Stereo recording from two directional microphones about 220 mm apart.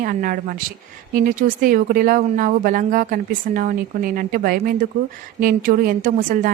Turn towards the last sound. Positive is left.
turn(degrees=-40)  # may be behind; listen again after turning